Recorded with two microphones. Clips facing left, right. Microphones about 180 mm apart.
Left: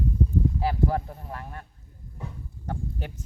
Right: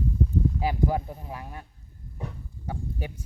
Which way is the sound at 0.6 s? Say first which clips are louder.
Even; 15° right (ahead or behind).